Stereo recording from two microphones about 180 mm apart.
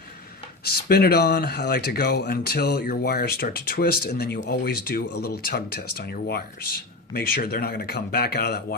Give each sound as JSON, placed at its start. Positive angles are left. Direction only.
{"t": 0.9, "sound": "speech", "side_deg": 60}